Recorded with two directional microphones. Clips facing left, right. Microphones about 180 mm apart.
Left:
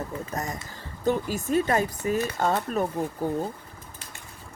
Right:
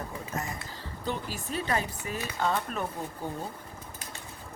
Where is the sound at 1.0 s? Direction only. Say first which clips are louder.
Left 9 dB; 45° left (ahead or behind).